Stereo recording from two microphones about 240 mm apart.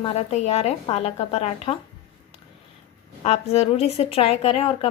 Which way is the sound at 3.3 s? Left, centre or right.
Left.